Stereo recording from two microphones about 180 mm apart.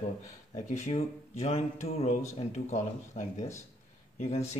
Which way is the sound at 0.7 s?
40° left (ahead or behind).